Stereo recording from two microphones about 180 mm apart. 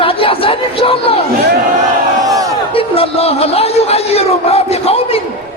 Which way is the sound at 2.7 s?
30° left (ahead or behind).